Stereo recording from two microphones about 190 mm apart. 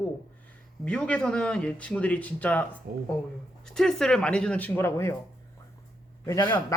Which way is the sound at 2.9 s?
50° right (ahead or behind).